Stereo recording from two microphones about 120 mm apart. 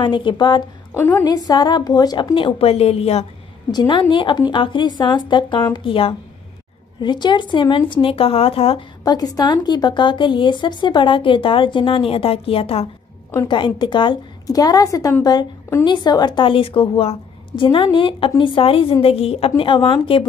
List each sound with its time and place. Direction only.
0.0 s speech: 40° left (ahead or behind)
0.9 s a woman's voice: 15° left (ahead or behind)
1.2 s speech: 35° left (ahead or behind)
2.3 s a woman's voice: 50° left (ahead or behind)
3.7 s speech: 40° left (ahead or behind)
7.0 s a woman's voice: 40° left (ahead or behind)
9.0 s speech: 30° left (ahead or behind); by 12.9 s 55° left (ahead or behind)
13.5 s a woman's voice: 40° left (ahead or behind)